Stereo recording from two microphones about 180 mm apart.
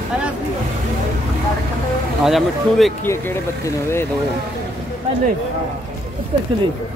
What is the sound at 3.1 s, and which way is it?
Speech, 15° left (ahead or behind).